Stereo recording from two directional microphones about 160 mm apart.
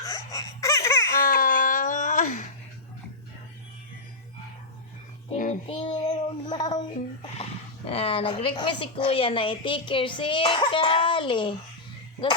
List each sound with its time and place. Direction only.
0.0 s laughter: 20° left (ahead or behind)
1.3 s a sound: 60° left (ahead or behind)
5.3 s child singing: 50° left (ahead or behind)
5.6 s child singing: 35° left (ahead or behind)
6.5 s a sound: 25° left (ahead or behind)
7.9 s a woman's voice: 35° left (ahead or behind)